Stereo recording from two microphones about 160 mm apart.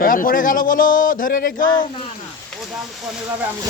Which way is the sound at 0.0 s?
60° left (ahead or behind).